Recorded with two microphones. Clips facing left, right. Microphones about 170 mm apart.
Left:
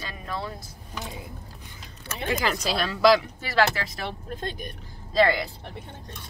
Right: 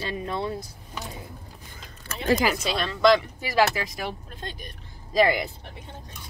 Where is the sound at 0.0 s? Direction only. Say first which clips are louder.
Right 5 dB; 25° right (ahead or behind).